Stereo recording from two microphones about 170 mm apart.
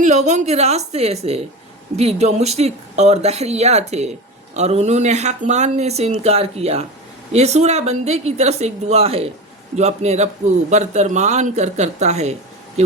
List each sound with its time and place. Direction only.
0.0 s speech: 45° right (ahead or behind)